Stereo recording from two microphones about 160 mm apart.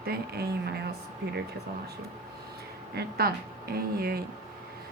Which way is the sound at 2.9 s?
80° right.